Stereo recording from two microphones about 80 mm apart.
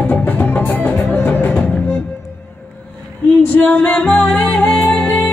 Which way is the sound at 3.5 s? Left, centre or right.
Left.